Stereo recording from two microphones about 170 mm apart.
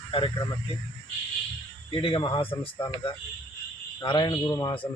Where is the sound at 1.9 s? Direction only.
30° left (ahead or behind).